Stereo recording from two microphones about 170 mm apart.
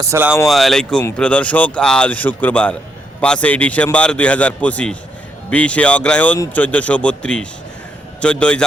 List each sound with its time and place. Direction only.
0.0 s speech: 15° right (ahead or behind)
0.4 s a man's voice: centre (ahead or behind)